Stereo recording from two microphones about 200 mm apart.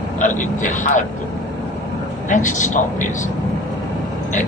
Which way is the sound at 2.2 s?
40° left (ahead or behind).